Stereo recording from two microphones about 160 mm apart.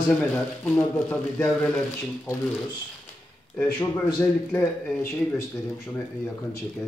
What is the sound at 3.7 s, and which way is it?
Speech, 25° left (ahead or behind).